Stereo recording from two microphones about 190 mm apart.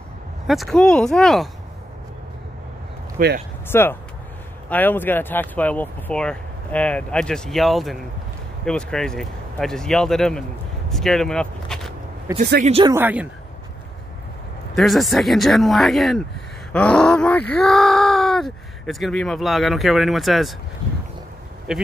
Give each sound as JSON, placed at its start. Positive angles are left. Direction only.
{"t": 0.5, "sound": "speech", "side_deg": 0}
{"t": 3.2, "sound": "speech", "side_deg": -55}
{"t": 3.6, "sound": "speech", "side_deg": 10}
{"t": 10.9, "sound": "a sound", "side_deg": 0}
{"t": 12.3, "sound": "speech", "side_deg": -15}
{"t": 12.6, "sound": "speech", "side_deg": -30}
{"t": 12.9, "sound": "speech", "side_deg": -10}
{"t": 14.8, "sound": "speech", "side_deg": 0}
{"t": 21.7, "sound": "speech", "side_deg": -5}